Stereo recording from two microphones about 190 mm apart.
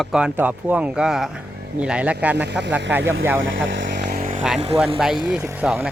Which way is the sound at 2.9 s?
10° right (ahead or behind).